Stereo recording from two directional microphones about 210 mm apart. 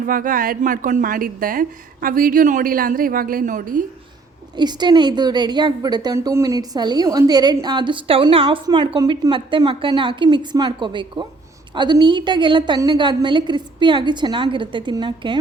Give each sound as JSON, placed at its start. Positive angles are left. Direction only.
{"t": 0.0, "sound": "a woman's voice", "side_deg": -40}
{"t": 4.5, "sound": "a woman's voice", "side_deg": -20}